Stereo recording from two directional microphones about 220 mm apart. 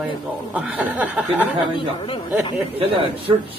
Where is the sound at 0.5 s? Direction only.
5° right (ahead or behind).